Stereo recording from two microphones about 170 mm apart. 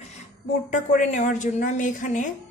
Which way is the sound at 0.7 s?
50° left (ahead or behind).